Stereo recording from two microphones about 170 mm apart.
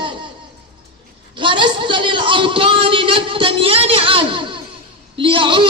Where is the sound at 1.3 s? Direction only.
30° right (ahead or behind).